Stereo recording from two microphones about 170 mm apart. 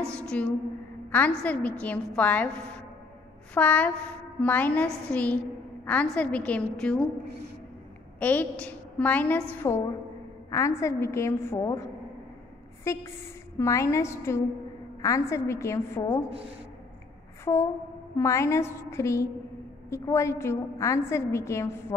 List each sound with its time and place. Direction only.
0.1 s a woman's voice: 5° left (ahead or behind)
8.2 s a woman's voice: 10° left (ahead or behind)
12.8 s a sound: 15° left (ahead or behind)
13.6 s a woman's voice: 15° left (ahead or behind)
17.5 s a sound: 25° left (ahead or behind)
18.1 s a woman's voice: 15° left (ahead or behind)